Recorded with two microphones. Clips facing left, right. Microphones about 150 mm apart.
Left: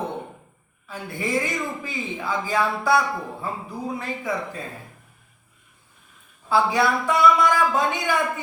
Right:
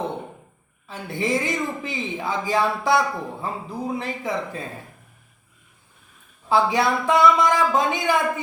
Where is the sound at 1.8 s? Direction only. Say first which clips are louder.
Right 1 dB; 25° right (ahead or behind).